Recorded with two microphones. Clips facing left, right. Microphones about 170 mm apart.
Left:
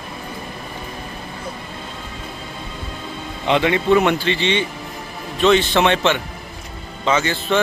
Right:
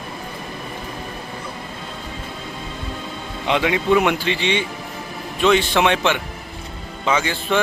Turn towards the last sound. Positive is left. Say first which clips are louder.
# left 1 dB
turn(degrees=-10)  # may be behind; listen again after turning